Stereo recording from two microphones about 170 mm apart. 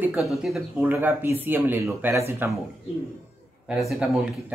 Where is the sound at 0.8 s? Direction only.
15° right (ahead or behind).